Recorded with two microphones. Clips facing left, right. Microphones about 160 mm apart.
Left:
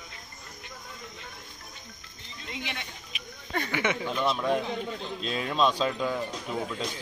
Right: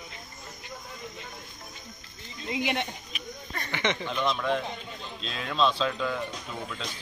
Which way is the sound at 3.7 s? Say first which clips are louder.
Right 1 dB; 10° left (ahead or behind).